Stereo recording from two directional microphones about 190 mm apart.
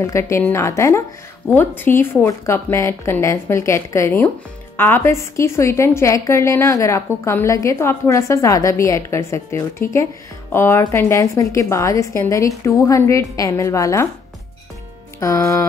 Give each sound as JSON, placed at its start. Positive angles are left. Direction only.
{"t": 0.0, "sound": "a woman's voice", "side_deg": 15}
{"t": 15.1, "sound": "a woman's voice", "side_deg": 15}